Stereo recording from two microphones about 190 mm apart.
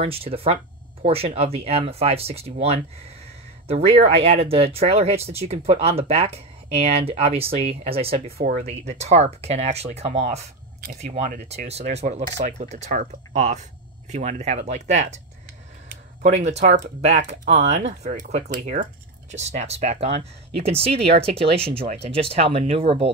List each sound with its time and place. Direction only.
0.0 s speech: 30° right (ahead or behind)
8.3 s speech: 55° right (ahead or behind)
8.6 s speech: 35° right (ahead or behind)
10.8 s speech: 50° right (ahead or behind)
11.1 s speech: 35° right (ahead or behind)